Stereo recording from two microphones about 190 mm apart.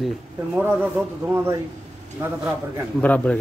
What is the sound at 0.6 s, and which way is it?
Speech, 10° right (ahead or behind).